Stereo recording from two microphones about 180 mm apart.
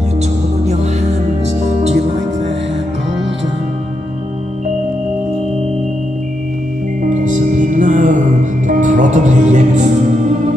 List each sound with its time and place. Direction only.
1.8 s music: 35° right (ahead or behind)
7.0 s music: 45° right (ahead or behind)